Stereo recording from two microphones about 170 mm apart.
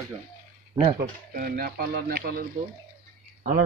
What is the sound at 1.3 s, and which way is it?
Speech, 55° right (ahead or behind).